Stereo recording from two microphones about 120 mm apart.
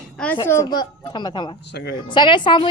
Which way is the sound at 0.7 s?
40° left (ahead or behind).